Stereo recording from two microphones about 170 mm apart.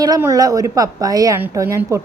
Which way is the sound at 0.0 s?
20° right (ahead or behind).